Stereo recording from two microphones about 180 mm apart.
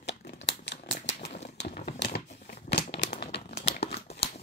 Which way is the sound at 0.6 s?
75° left (ahead or behind).